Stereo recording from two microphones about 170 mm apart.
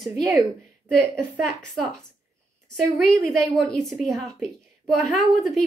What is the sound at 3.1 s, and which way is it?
Speech, centre (ahead or behind).